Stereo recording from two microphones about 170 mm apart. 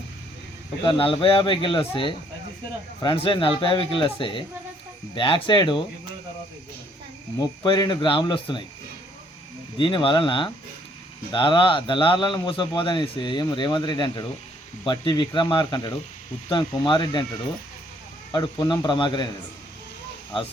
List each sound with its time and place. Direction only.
0.9 s a man's voice: 30° left (ahead or behind)
7.3 s a man's voice: 25° left (ahead or behind)
9.7 s a man's voice: 30° left (ahead or behind)
18.3 s a man's voice: 25° left (ahead or behind)